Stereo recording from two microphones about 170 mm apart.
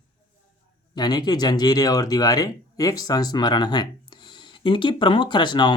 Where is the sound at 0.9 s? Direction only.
25° left (ahead or behind).